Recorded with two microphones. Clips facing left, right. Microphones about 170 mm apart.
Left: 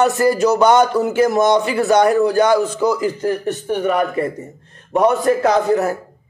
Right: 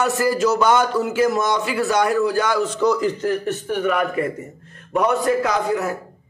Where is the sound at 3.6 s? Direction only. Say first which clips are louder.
Left 5 dB; 35° left (ahead or behind).